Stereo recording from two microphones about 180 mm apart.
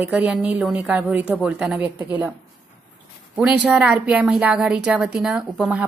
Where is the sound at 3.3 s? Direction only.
5° right (ahead or behind).